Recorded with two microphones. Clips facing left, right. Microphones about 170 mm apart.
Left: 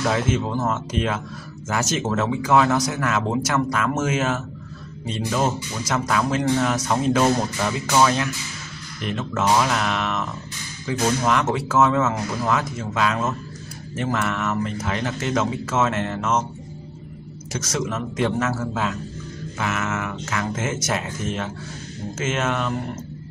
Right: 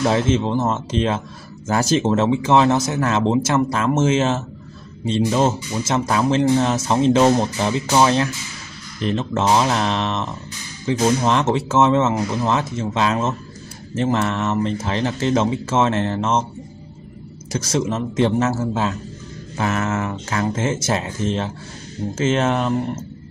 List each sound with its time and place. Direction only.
0.0 s speech: 30° right (ahead or behind)
17.5 s speech: 30° right (ahead or behind)